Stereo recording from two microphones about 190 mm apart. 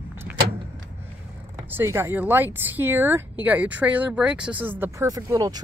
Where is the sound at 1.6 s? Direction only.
10° right (ahead or behind).